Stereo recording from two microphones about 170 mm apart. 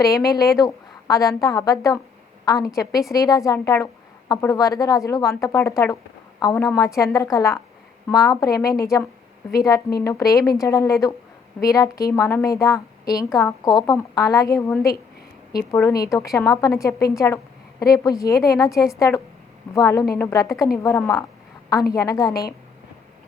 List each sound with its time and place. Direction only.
0.0 s a woman's voice: 20° left (ahead or behind)
15.7 s a woman's voice: 20° left (ahead or behind)